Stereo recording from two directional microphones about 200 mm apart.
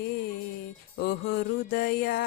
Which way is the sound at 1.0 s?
50° left (ahead or behind).